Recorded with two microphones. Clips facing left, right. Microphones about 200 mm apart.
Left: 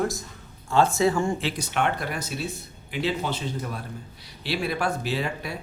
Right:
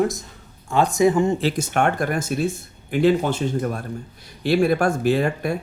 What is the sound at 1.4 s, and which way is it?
Speech, 45° right (ahead or behind).